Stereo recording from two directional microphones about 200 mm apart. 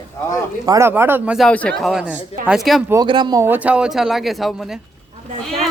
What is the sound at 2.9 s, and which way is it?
A woman's voice, 20° right (ahead or behind).